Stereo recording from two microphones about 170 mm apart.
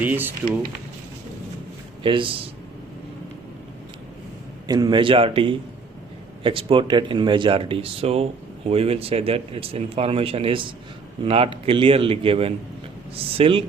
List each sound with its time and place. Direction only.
0.0 s speech: 10° right (ahead or behind)
2.0 s speech: 30° right (ahead or behind)
4.7 s speech: 25° right (ahead or behind)